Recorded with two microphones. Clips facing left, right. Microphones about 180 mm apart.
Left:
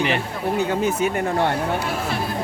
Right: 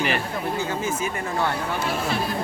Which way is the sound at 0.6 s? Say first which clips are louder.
Left 9 dB; 65° left (ahead or behind).